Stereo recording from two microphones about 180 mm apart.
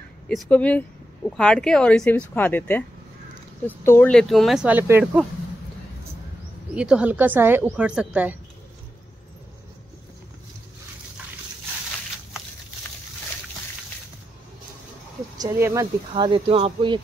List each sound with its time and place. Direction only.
0.3 s speech: 5° left (ahead or behind); by 5.2 s 10° right (ahead or behind)
6.7 s a woman's voice: 5° right (ahead or behind)
15.3 s speech: 20° right (ahead or behind)
16.4 s speech: 30° right (ahead or behind)